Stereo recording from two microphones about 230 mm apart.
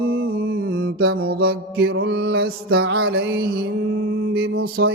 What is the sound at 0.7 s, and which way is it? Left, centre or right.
Music, right.